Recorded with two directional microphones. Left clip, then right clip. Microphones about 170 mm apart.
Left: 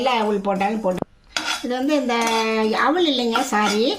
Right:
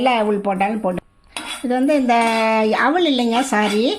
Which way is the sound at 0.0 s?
40° right (ahead or behind).